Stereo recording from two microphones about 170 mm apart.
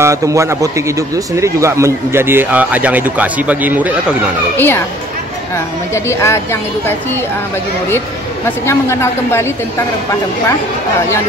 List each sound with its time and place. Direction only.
0.0 s speech: 15° right (ahead or behind)
4.6 s a woman's voice: 15° left (ahead or behind)
5.9 s a woman's voice: 15° left (ahead or behind)
8.6 s a woman's voice: 15° left (ahead or behind)